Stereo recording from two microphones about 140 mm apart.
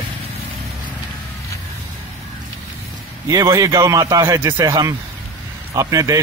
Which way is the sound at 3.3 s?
25° right (ahead or behind).